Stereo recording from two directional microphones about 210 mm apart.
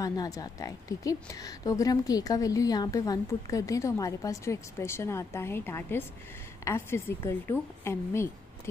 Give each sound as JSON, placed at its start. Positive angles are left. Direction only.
{"t": 0.0, "sound": "speech", "side_deg": 15}